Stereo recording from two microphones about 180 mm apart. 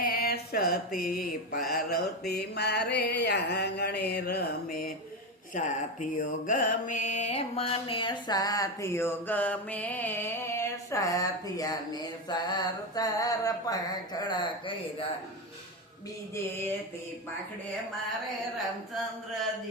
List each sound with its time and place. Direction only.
0.0 s mantra: 55° left (ahead or behind)
1.5 s a sound: 55° left (ahead or behind)
5.5 s mantra: 45° left (ahead or behind); by 15.0 s 30° left (ahead or behind)